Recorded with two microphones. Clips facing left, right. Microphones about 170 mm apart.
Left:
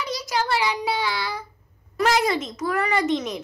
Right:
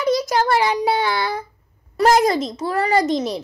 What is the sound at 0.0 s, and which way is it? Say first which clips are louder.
Child singing: right 8 dB; 50° right (ahead or behind).